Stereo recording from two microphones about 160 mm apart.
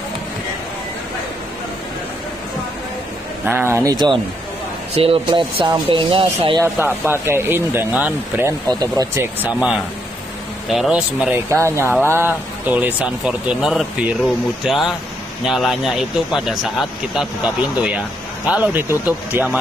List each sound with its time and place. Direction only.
3.4 s speech: 15° right (ahead or behind)
3.9 s speech: 25° right (ahead or behind)
6.6 s speech: 15° right (ahead or behind)
18.5 s speech: 10° right (ahead or behind)